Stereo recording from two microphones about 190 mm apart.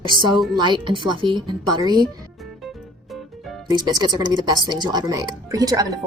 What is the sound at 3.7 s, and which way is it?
Speech, 20° right (ahead or behind).